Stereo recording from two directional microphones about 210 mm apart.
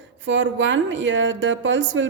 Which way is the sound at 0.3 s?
60° right (ahead or behind).